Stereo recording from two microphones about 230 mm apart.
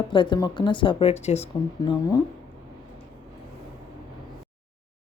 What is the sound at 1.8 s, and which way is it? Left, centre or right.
Speech, centre.